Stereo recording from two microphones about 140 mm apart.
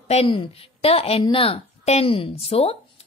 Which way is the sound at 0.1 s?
45° left (ahead or behind).